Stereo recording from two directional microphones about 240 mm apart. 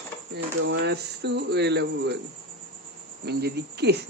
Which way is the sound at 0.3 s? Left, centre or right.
Right.